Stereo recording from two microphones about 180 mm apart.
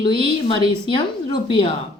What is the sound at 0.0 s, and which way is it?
A woman's voice, 30° left (ahead or behind).